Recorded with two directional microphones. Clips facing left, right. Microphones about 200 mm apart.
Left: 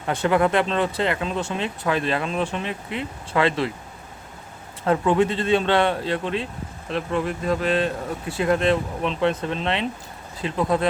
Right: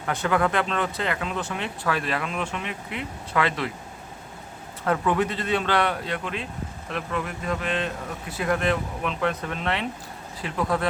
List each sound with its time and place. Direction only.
0.0 s speech: 25° left (ahead or behind)
4.9 s speech: 25° left (ahead or behind)